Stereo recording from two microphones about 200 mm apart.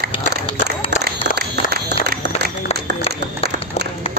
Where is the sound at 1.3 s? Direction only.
55° right (ahead or behind).